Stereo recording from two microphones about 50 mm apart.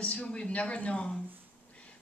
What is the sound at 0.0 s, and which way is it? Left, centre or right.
A woman's voice, left.